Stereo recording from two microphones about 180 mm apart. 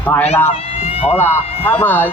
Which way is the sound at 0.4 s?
35° left (ahead or behind).